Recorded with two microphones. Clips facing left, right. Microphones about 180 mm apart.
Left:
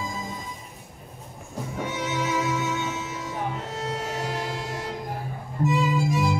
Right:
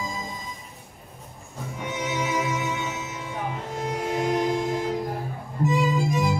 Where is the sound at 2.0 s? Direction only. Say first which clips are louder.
Right 1 dB; 15° right (ahead or behind).